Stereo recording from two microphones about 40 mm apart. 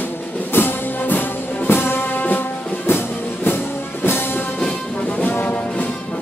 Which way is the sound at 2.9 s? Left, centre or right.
Left.